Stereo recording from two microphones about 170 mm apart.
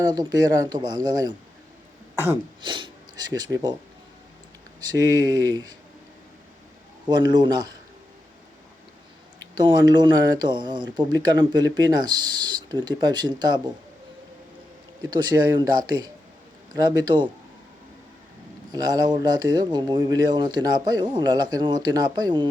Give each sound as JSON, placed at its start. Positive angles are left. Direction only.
{"t": 0.0, "sound": "speech", "side_deg": -25}
{"t": 2.6, "sound": "speech", "side_deg": -30}
{"t": 4.9, "sound": "speech", "side_deg": -25}
{"t": 7.1, "sound": "speech", "side_deg": -25}
{"t": 9.4, "sound": "speech", "side_deg": -25}
{"t": 15.1, "sound": "speech", "side_deg": -25}
{"t": 18.7, "sound": "speech", "side_deg": -25}